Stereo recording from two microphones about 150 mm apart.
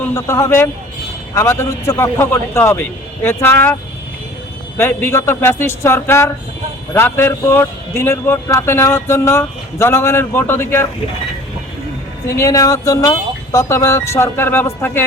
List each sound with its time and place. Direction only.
0.1 s a man's voice: 15° left (ahead or behind)
4.8 s a man's voice: 15° left (ahead or behind)
12.4 s speech: 20° left (ahead or behind)